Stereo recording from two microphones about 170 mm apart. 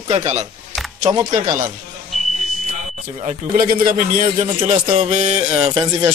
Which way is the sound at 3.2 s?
55° right (ahead or behind).